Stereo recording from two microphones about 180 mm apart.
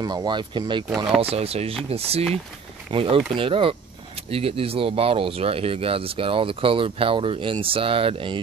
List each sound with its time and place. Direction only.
0.0 s speech: 25° right (ahead or behind)